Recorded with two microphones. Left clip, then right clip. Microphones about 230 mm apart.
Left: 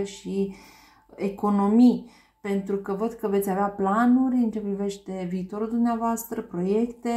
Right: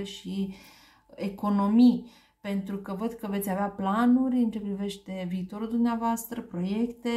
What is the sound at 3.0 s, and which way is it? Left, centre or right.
Speech, right.